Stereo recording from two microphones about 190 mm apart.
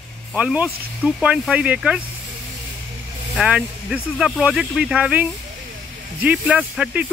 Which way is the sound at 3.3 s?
5° right (ahead or behind).